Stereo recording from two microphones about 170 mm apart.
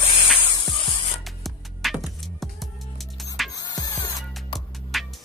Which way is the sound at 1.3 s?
Centre (ahead or behind).